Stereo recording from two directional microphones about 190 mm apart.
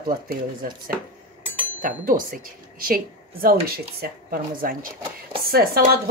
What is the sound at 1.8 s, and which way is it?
Speech, 45° right (ahead or behind).